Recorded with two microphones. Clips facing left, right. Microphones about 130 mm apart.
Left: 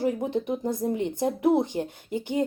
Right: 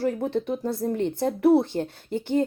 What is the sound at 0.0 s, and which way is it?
Speech, 15° left (ahead or behind).